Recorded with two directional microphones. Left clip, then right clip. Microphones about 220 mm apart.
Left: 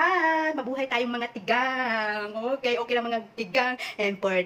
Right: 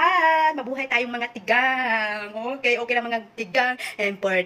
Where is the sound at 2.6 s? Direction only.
10° left (ahead or behind).